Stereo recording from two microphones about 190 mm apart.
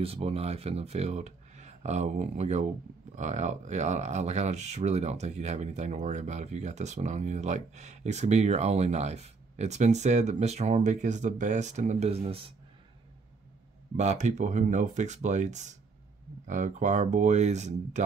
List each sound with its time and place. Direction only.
0.0 s speech: 30° right (ahead or behind)
13.9 s speech: 35° right (ahead or behind)